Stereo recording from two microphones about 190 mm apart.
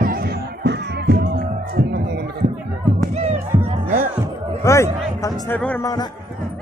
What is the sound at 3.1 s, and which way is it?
Music, 35° right (ahead or behind).